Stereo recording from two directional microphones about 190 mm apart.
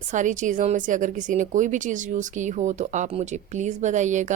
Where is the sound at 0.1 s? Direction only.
40° right (ahead or behind).